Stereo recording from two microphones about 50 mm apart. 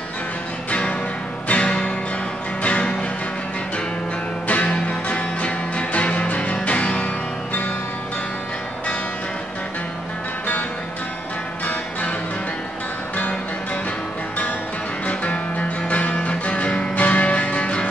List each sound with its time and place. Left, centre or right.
0.7 s music: left
4.5 s music: left
15.0 s music: left